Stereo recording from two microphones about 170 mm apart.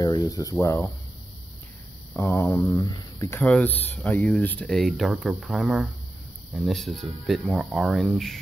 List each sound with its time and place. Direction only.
0.0 s speech: 25° left (ahead or behind)
2.1 s speech: 10° left (ahead or behind)